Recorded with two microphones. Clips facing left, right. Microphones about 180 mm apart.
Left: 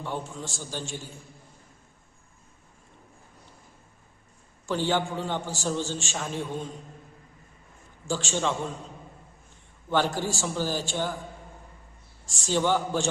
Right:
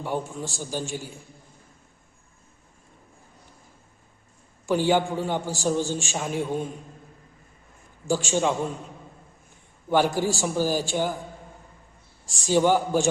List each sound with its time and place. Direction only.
0.0 s a man's voice: 10° right (ahead or behind)
4.6 s a man's voice: 10° right (ahead or behind)
8.0 s a man's voice: 10° right (ahead or behind)
9.9 s a man's voice: 10° right (ahead or behind)
12.2 s a man's voice: 10° right (ahead or behind)